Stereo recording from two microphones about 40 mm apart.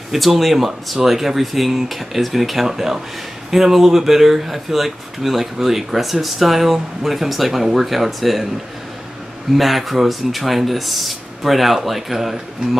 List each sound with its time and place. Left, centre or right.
0.1 s speech: centre
9.6 s speech: centre